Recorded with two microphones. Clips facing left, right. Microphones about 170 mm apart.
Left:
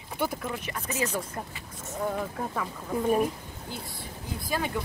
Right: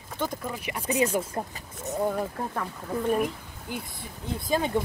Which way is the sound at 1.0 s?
30° right (ahead or behind).